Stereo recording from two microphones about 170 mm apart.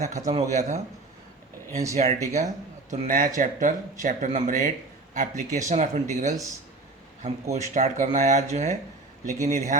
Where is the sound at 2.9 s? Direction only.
50° right (ahead or behind).